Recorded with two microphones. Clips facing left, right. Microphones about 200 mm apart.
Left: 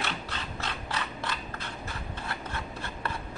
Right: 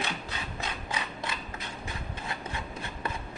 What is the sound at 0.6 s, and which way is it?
Mechanisms, 15° right (ahead or behind).